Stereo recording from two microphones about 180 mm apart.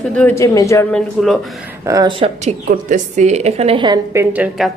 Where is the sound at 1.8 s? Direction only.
20° right (ahead or behind).